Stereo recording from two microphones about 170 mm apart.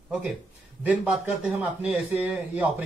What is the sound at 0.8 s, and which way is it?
A man's voice, 10° right (ahead or behind).